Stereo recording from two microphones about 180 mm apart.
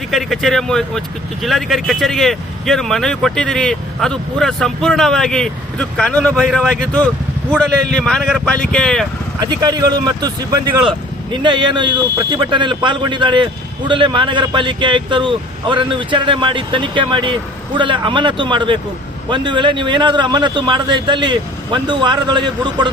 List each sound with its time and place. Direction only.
0.1 s speech: centre (ahead or behind)
9.4 s speech: 25° right (ahead or behind)